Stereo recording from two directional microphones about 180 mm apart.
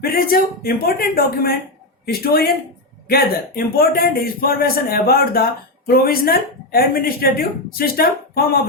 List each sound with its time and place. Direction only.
0.0 s a man's voice: 55° left (ahead or behind)